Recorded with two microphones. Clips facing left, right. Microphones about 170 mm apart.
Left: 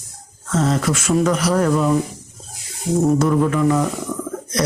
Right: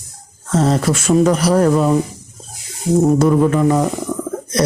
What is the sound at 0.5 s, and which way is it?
Speech, 35° right (ahead or behind).